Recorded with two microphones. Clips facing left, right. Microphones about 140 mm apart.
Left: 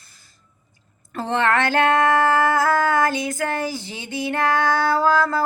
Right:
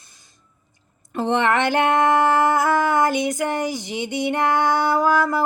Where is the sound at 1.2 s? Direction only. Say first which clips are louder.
Right 1 dB; 20° right (ahead or behind).